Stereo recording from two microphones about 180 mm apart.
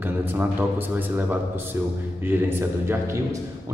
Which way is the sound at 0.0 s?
10° right (ahead or behind).